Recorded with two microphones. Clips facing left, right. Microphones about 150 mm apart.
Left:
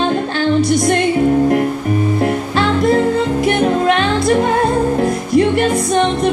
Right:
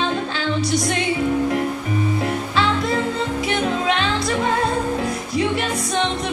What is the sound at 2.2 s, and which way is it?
Music, 55° left (ahead or behind).